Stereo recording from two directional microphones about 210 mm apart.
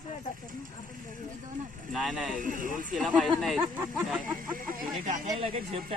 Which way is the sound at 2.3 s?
40° right (ahead or behind).